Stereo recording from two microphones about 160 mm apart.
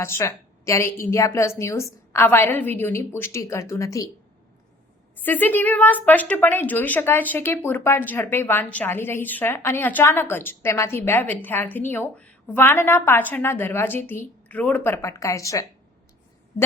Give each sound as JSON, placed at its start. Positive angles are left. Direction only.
{"t": 0.0, "sound": "speech", "side_deg": 15}
{"t": 5.2, "sound": "speech", "side_deg": 10}